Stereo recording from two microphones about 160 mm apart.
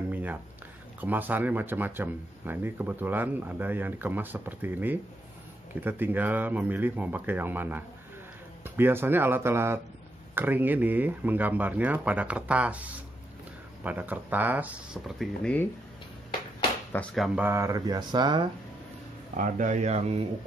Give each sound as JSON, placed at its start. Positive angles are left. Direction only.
{"t": 0.1, "sound": "a sound", "side_deg": -10}
{"t": 1.0, "sound": "speech", "side_deg": -10}
{"t": 15.1, "sound": "speech", "side_deg": 10}
{"t": 16.9, "sound": "speech", "side_deg": 5}
{"t": 17.4, "sound": "speech", "side_deg": -15}
{"t": 19.3, "sound": "speech", "side_deg": -50}